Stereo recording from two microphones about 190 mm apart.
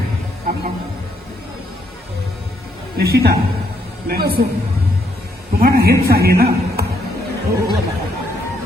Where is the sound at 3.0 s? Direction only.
55° right (ahead or behind).